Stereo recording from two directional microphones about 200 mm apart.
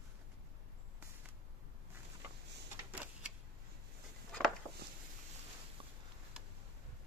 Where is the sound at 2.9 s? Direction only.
5° right (ahead or behind).